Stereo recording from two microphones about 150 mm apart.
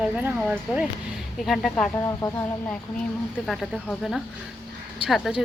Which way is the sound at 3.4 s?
Centre (ahead or behind).